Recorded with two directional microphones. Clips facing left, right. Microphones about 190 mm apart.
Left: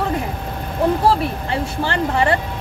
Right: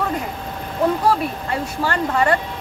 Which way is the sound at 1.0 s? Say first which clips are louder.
Left 2 dB; 30° left (ahead or behind).